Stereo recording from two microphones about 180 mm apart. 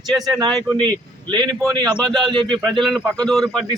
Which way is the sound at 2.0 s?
Centre (ahead or behind).